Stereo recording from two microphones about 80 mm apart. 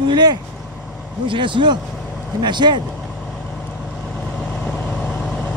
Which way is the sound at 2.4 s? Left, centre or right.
Right.